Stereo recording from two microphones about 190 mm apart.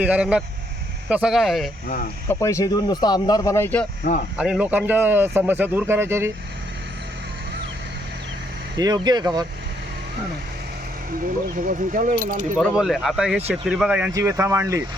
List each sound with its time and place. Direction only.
0.0 s speech: 5° right (ahead or behind)
2.2 s speech: 15° left (ahead or behind)
4.0 s speech: 40° left (ahead or behind)
4.4 s speech: 5° right (ahead or behind)
8.7 s speech: 20° right (ahead or behind)
11.1 s speech: 45° right (ahead or behind)
12.5 s speech: centre (ahead or behind)
14.1 s speech: 15° right (ahead or behind)